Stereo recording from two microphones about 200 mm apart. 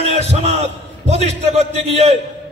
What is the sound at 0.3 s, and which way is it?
A man's voice, 35° right (ahead or behind).